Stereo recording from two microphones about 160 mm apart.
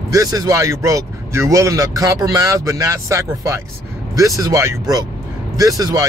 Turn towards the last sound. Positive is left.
turn(degrees=-20)  # may be behind; listen again after turning